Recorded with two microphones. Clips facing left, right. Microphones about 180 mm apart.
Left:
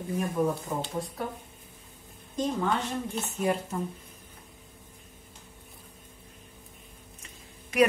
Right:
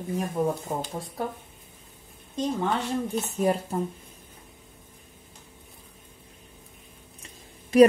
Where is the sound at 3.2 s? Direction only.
35° right (ahead or behind).